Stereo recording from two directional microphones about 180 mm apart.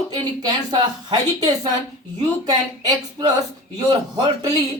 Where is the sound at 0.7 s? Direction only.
25° right (ahead or behind).